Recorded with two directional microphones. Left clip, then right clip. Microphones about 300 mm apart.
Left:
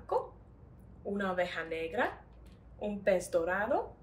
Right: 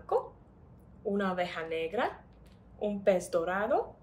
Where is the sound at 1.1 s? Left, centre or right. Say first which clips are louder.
Even; centre.